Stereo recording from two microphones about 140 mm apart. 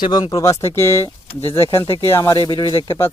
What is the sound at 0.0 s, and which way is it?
Speech, 30° left (ahead or behind).